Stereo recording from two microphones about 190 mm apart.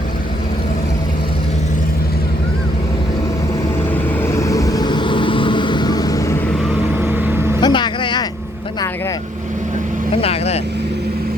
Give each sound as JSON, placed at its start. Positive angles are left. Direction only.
{"t": 4.2, "sound": "vehicle", "side_deg": 15}
{"t": 7.0, "sound": "vehicle", "side_deg": -10}
{"t": 7.6, "sound": "vehicle", "side_deg": 25}
{"t": 10.2, "sound": "vehicle", "side_deg": 30}